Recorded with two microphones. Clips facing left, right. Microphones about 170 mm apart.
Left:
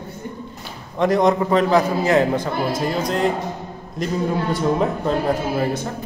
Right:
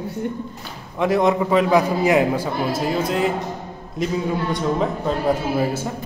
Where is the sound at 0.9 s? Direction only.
5° right (ahead or behind).